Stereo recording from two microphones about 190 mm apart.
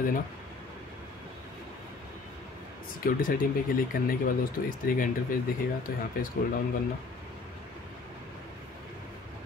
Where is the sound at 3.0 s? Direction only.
50° left (ahead or behind).